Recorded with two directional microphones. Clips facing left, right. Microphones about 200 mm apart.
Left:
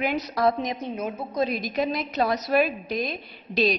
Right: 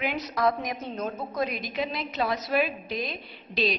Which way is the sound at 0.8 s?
15° left (ahead or behind).